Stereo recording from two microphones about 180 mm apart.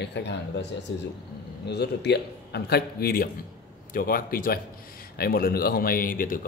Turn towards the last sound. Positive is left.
turn(degrees=50)  # may be behind; listen again after turning